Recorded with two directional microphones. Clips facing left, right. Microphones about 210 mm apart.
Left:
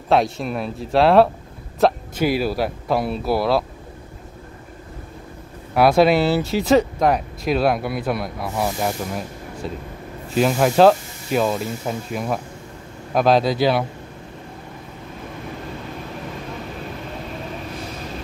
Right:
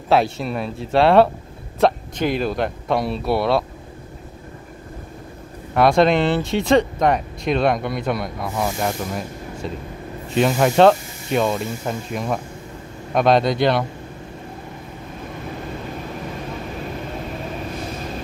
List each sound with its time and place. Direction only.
0.1 s speech: centre (ahead or behind)
5.8 s speech: 5° left (ahead or behind)
10.3 s speech: centre (ahead or behind)